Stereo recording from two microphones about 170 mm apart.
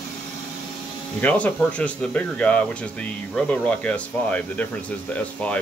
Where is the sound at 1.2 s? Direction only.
10° left (ahead or behind).